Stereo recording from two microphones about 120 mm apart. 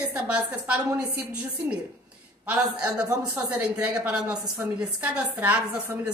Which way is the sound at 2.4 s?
10° right (ahead or behind).